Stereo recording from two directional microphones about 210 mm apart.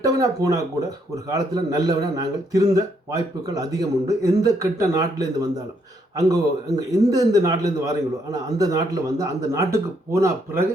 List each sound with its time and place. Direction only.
0.0 s a man's voice: 15° right (ahead or behind)